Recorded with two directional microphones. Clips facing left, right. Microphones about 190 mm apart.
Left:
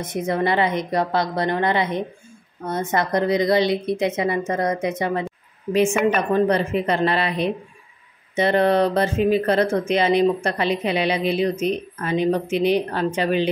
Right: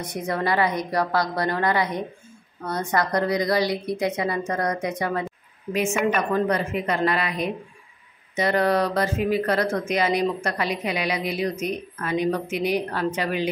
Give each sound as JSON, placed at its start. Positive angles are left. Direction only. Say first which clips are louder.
{"t": 0.0, "sound": "speech", "louder": "left 4 dB", "side_deg": 25}